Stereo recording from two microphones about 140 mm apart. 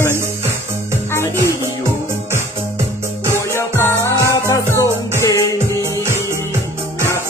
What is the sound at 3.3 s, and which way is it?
Music, 15° left (ahead or behind).